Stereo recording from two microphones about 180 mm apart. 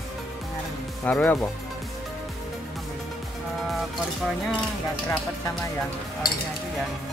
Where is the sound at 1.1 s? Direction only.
10° left (ahead or behind).